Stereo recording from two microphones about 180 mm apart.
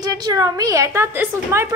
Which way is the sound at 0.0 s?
20° right (ahead or behind).